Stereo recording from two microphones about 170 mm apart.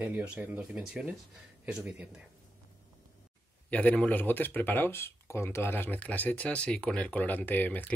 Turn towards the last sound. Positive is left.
turn(degrees=10)  # may be behind; listen again after turning